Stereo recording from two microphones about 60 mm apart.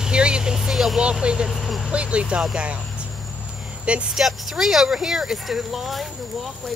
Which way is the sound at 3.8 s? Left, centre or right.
Centre.